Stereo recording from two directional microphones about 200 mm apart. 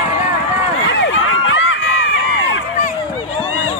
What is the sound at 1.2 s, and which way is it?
Run, 80° left.